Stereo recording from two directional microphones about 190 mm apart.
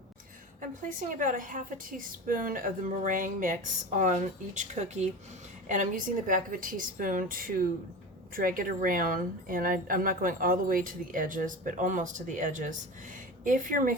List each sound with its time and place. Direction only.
0.6 s speech: 45° right (ahead or behind)